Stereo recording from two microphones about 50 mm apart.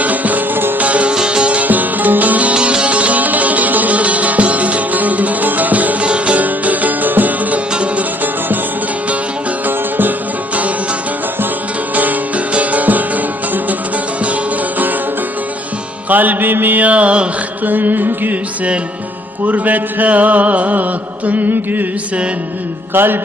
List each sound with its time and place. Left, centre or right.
0.0 s music: right
0.9 s music: right
1.1 s music: centre
2.6 s music: right
7.7 s music: right
12.5 s music: right
16.0 s music: right
17.7 s a sound: right
19.5 s a sound: right
22.9 s music: right